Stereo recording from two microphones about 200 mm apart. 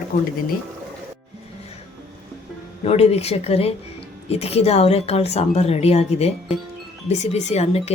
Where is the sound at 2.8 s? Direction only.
30° left (ahead or behind).